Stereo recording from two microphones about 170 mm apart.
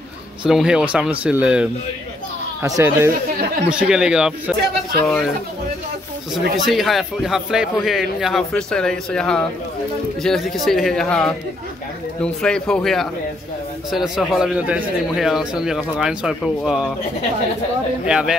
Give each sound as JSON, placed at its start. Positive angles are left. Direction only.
{"t": 0.5, "sound": "a man's voice", "side_deg": -5}
{"t": 2.6, "sound": "speech", "side_deg": -15}
{"t": 3.7, "sound": "a man's voice", "side_deg": -5}
{"t": 6.5, "sound": "a man's voice", "side_deg": 0}
{"t": 18.0, "sound": "a man's voice", "side_deg": -5}